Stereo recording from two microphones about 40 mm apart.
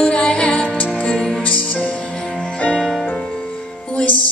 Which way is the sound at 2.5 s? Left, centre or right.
Left.